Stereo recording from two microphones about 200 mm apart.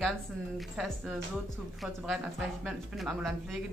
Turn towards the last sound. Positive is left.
turn(degrees=0)  # may be behind; listen again after turning